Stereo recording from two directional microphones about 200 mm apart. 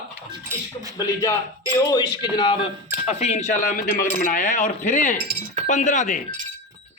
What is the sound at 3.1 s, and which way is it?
Speech, 35° left (ahead or behind).